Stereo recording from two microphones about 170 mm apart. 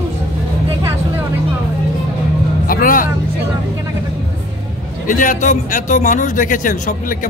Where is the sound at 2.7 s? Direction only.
55° left (ahead or behind).